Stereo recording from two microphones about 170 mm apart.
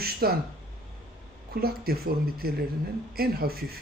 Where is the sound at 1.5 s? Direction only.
65° right (ahead or behind).